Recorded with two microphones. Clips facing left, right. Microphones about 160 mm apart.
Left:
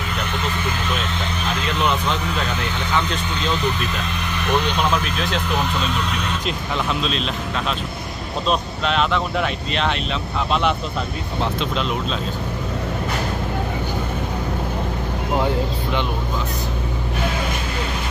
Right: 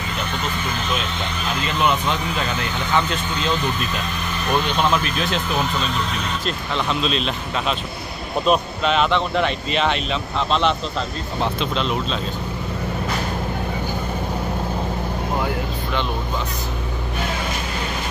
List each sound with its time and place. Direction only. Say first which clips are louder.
6.4 s speech: even; 5° left (ahead or behind)
11.6 s speech: even; 5° left (ahead or behind)
15.4 s a sound: left 3 dB; 15° left (ahead or behind)